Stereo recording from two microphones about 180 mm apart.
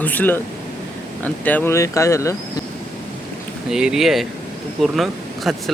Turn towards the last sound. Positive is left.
turn(degrees=0)  # may be behind; listen again after turning